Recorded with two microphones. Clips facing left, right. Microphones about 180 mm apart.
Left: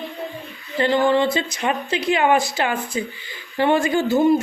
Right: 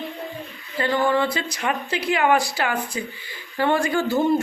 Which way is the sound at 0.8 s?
20° left (ahead or behind).